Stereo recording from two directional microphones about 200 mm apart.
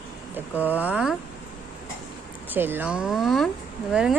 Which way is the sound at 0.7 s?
5° right (ahead or behind).